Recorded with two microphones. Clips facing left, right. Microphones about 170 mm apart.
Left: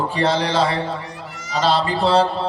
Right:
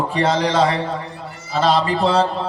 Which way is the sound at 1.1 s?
90° left.